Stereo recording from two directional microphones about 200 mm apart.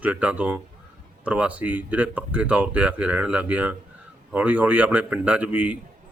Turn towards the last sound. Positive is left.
turn(degrees=-5)  # may be behind; listen again after turning